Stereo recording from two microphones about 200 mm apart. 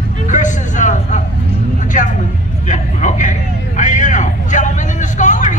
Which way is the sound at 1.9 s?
40° left (ahead or behind).